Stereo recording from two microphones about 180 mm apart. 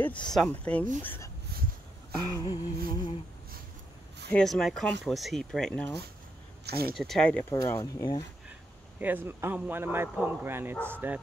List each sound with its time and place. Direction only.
0.3 s speech: 5° left (ahead or behind)
2.3 s humming: 20° left (ahead or behind)
4.3 s speech: 5° left (ahead or behind)
6.6 s speech: 60° right (ahead or behind)
7.0 s speech: 5° left (ahead or behind)
7.7 s humming: 20° left (ahead or behind)
9.0 s a man's voice: 10° right (ahead or behind)